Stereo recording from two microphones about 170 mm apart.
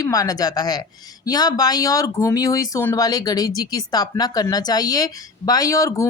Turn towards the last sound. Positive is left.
turn(degrees=20)  # may be behind; listen again after turning